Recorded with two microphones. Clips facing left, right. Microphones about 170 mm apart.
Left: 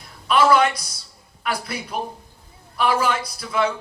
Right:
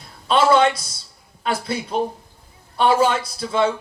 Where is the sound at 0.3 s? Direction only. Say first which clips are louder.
Right 1 dB; 25° right (ahead or behind).